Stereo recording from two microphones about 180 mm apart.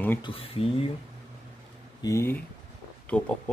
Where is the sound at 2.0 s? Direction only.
15° left (ahead or behind).